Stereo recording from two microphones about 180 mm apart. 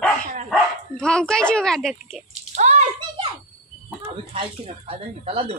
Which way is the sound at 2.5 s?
40° right (ahead or behind).